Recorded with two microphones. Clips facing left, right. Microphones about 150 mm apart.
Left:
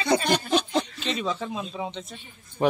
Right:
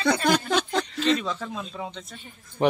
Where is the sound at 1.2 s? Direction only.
15° left (ahead or behind).